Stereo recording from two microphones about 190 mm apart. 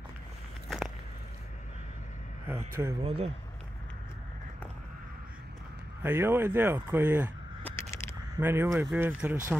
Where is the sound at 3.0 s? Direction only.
30° right (ahead or behind).